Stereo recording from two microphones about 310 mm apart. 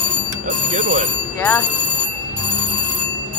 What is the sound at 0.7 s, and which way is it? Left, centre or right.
Alarm clock, right.